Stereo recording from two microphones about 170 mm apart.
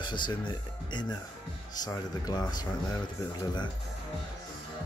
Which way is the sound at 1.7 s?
20° left (ahead or behind).